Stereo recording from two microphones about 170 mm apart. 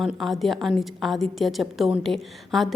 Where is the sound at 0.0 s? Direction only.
Centre (ahead or behind).